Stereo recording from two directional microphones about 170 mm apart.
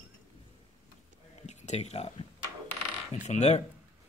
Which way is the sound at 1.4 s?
40° left (ahead or behind).